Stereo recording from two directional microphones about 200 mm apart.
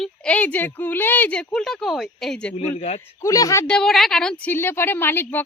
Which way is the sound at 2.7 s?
35° left (ahead or behind).